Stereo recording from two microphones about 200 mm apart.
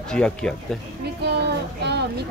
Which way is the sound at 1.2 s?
55° right (ahead or behind).